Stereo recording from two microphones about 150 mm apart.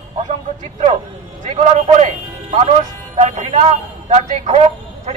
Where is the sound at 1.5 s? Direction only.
50° right (ahead or behind).